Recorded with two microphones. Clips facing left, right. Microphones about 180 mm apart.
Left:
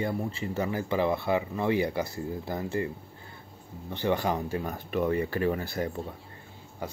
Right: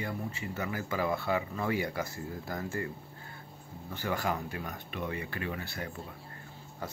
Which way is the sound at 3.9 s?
25° left (ahead or behind).